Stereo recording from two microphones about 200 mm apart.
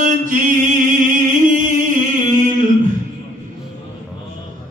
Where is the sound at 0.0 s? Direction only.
40° right (ahead or behind).